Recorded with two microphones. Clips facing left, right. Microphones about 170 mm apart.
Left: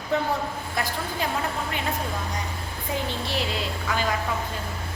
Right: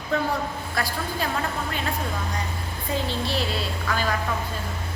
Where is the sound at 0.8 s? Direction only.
20° left (ahead or behind).